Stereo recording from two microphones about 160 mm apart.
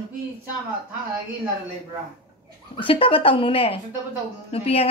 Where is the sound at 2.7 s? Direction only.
35° left (ahead or behind).